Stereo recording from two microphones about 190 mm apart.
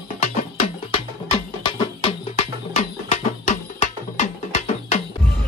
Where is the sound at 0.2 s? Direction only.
35° left (ahead or behind).